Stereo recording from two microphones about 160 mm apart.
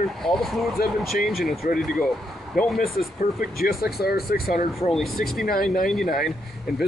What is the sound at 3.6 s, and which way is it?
Speech, 70° left (ahead or behind).